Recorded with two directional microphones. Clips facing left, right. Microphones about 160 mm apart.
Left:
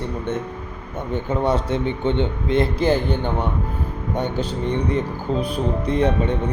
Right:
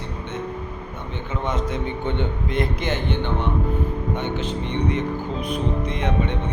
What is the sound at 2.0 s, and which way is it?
Speech, 25° left (ahead or behind).